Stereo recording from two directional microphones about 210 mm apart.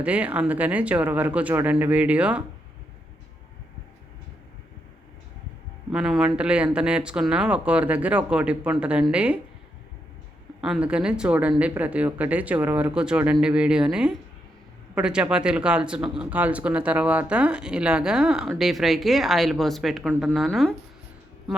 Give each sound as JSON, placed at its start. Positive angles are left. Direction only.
{"t": 0.0, "sound": "speech", "side_deg": -5}
{"t": 5.9, "sound": "speech", "side_deg": -5}
{"t": 10.6, "sound": "speech", "side_deg": -5}